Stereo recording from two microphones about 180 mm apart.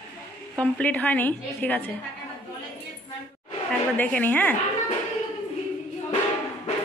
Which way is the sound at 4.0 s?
10° left (ahead or behind).